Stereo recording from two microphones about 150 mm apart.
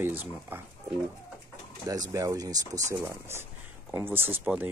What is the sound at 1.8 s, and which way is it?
Speech, 25° right (ahead or behind).